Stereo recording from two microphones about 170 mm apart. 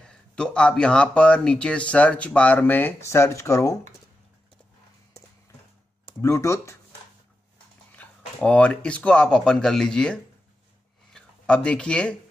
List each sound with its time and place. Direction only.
0.0 s speech: 5° left (ahead or behind)
6.2 s speech: 15° left (ahead or behind)
7.9 s speech: 10° left (ahead or behind)